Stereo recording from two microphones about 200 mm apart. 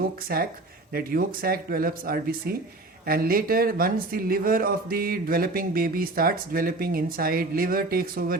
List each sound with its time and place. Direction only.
0.3 s speech: 50° right (ahead or behind)